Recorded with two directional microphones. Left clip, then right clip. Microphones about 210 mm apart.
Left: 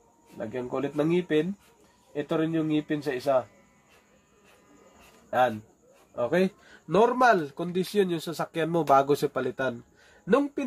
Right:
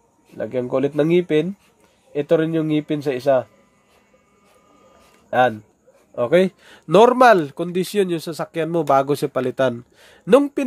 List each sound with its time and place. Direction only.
0.4 s speech: 45° right (ahead or behind)
6.1 s speech: 45° right (ahead or behind)